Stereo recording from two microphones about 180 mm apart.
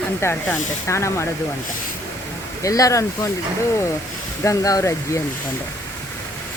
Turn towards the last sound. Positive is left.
turn(degrees=20)  # may be behind; listen again after turning